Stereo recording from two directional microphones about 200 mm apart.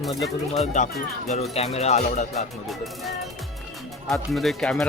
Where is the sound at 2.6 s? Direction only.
Centre (ahead or behind).